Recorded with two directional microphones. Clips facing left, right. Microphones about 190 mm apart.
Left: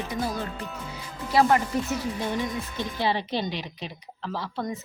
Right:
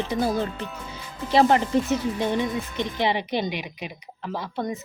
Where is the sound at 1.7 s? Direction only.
25° right (ahead or behind).